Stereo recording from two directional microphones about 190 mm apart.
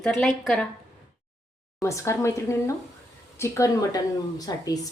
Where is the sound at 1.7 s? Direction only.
15° left (ahead or behind).